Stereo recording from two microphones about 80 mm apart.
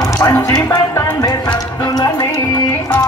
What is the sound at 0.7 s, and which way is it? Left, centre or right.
Music, left.